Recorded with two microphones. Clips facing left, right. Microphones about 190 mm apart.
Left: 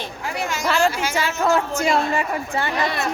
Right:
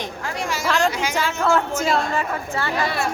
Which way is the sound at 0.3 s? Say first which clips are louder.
Left 1 dB; 5° left (ahead or behind).